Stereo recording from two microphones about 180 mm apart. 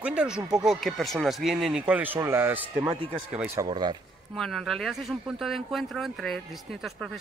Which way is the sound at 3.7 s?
25° right (ahead or behind).